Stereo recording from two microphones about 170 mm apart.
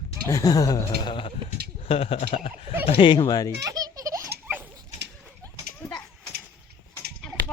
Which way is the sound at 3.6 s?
20° right (ahead or behind).